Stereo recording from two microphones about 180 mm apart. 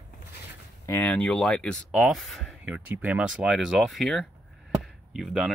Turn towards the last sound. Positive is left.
turn(degrees=0)  # may be behind; listen again after turning